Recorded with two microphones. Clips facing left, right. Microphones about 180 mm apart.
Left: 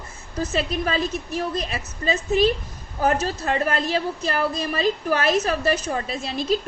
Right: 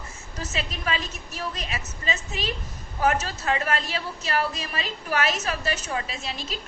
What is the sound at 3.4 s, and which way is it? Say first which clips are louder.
Speech: left 3 dB; 40° left (ahead or behind).